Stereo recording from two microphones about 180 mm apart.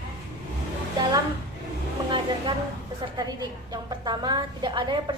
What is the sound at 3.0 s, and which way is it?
A woman's voice, 20° right (ahead or behind).